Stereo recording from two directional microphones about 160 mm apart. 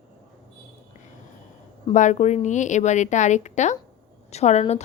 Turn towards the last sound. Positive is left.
turn(degrees=45)  # may be behind; listen again after turning